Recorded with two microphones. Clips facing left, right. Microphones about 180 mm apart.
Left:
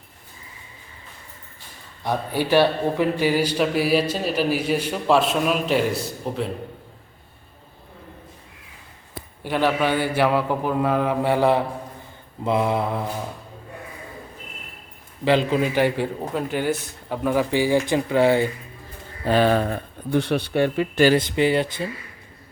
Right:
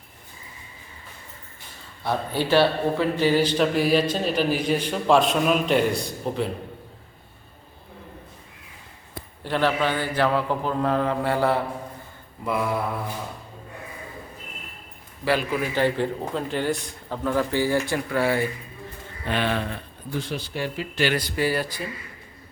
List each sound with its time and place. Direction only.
2.0 s a man's voice: 15° left (ahead or behind)
9.4 s a man's voice: 10° left (ahead or behind)
15.2 s a man's voice: 20° left (ahead or behind)
19.2 s speech: 40° left (ahead or behind)
20.1 s a man's voice: 65° left (ahead or behind)
21.2 s speech: 20° left (ahead or behind)